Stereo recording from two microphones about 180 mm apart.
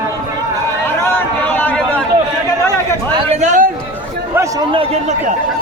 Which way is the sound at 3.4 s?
45° right (ahead or behind).